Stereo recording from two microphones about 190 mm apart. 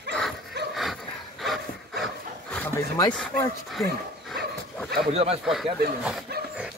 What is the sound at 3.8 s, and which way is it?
Speech, 15° left (ahead or behind).